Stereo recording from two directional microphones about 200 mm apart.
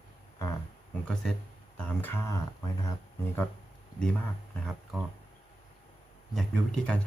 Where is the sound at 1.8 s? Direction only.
10° left (ahead or behind).